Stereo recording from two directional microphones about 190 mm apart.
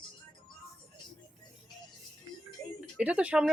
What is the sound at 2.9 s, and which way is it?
Speech, 5° right (ahead or behind).